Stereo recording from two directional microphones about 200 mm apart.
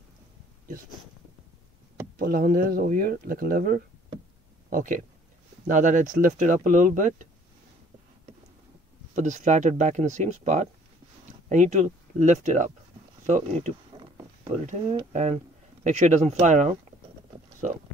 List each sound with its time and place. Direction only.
2.1 s speech: 45° right (ahead or behind)
9.1 s speech: 35° right (ahead or behind)